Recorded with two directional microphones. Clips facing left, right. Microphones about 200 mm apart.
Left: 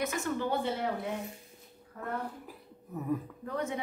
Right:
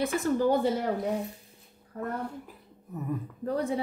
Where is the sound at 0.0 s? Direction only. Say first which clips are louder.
Right 7 dB; 35° right (ahead or behind).